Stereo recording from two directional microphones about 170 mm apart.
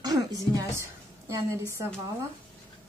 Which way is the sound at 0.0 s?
20° right (ahead or behind).